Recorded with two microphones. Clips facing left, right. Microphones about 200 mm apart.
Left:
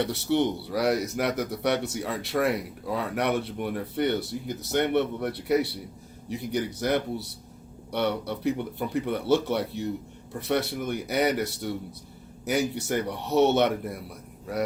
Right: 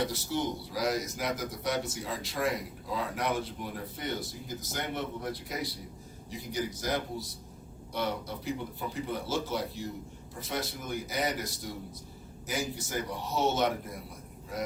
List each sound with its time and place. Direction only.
0.1 s speech: 65° left (ahead or behind)